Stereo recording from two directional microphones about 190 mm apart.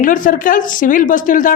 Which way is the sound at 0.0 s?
45° left (ahead or behind).